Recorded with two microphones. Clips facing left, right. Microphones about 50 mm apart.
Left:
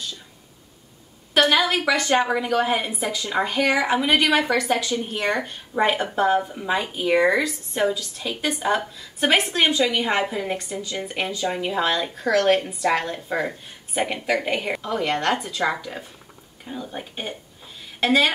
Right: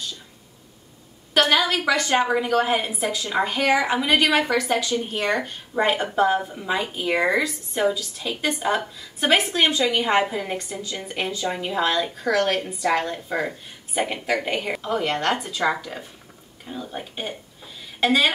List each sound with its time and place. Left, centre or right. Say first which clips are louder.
1.9 s a woman's voice: left 1 dB; centre
2.1 s a woman's voice: right 2 dB; centre